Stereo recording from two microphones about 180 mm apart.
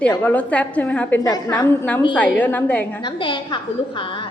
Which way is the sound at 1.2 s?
20° left (ahead or behind).